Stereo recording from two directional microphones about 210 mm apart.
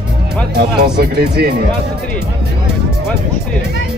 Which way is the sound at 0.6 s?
50° right (ahead or behind).